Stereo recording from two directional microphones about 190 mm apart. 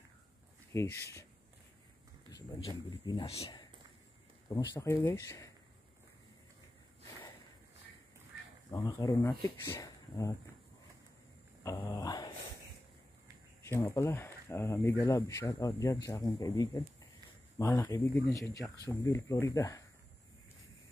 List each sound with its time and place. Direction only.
0.7 s speech: 15° left (ahead or behind)
2.9 s speech: 25° left (ahead or behind)
4.5 s speech: 15° left (ahead or behind)
8.6 s speech: 20° left (ahead or behind)
11.6 s a sound: 15° left (ahead or behind)
13.7 s speech: 15° left (ahead or behind)